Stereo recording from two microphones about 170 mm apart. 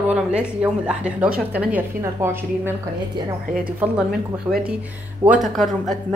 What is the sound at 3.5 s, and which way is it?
Speech, 60° right (ahead or behind).